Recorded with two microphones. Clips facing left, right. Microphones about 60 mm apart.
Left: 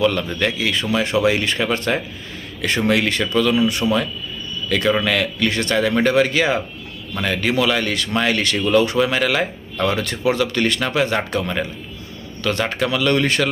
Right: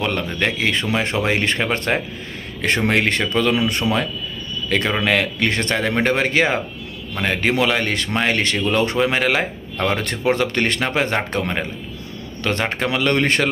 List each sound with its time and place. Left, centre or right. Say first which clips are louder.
0.3 s speech: even; right
3.8 s a man's voice: left 2 dB; centre
4.7 s speech: left 1 dB; right
8.5 s speech: left 2 dB; right
9.8 s speech: even; right